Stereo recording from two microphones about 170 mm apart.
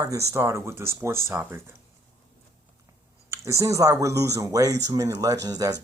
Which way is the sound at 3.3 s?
15° right (ahead or behind).